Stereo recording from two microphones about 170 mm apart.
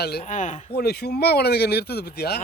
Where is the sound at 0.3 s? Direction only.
45° left (ahead or behind).